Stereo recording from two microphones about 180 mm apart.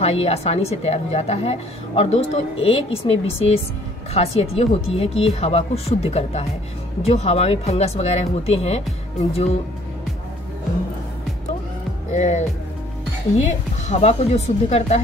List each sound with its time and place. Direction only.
0.0 s a woman's voice: 35° left (ahead or behind)
12.1 s a woman's voice: 40° left (ahead or behind)
13.8 s a woman's voice: 35° left (ahead or behind)